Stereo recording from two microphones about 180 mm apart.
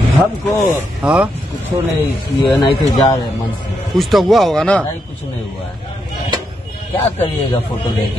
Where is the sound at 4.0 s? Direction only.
Centre (ahead or behind).